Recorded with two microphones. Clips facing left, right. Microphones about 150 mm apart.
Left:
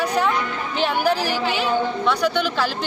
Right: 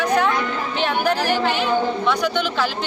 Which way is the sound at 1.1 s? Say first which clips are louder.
Right 3 dB; 50° right (ahead or behind).